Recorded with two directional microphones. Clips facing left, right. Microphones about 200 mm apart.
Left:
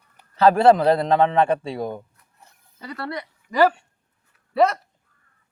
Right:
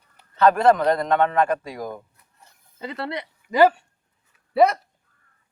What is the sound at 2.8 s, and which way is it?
Speech, 25° right (ahead or behind).